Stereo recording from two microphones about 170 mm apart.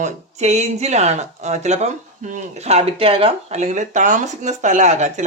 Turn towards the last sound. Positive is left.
turn(degrees=-45)  # may be behind; listen again after turning